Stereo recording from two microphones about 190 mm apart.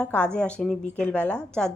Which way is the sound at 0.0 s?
5° left (ahead or behind).